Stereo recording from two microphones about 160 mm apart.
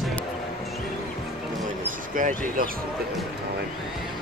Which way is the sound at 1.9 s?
55° right (ahead or behind).